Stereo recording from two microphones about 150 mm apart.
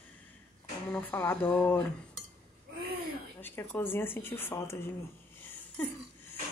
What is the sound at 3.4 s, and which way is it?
Speech, 15° left (ahead or behind).